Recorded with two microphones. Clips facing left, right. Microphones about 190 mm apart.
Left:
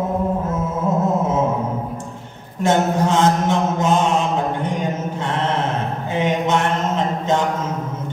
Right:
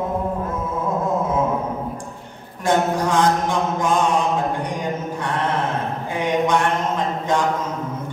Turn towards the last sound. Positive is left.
turn(degrees=25)  # may be behind; listen again after turning